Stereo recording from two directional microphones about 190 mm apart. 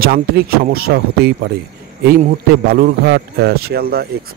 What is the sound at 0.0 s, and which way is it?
Speech, 50° right (ahead or behind).